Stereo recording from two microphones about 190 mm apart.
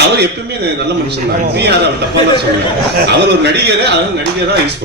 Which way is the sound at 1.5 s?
60° right (ahead or behind).